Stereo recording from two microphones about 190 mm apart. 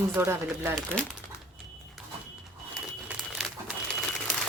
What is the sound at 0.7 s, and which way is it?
Speech, 5° left (ahead or behind).